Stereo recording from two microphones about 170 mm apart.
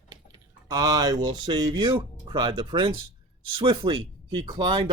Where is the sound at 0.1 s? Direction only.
25° right (ahead or behind).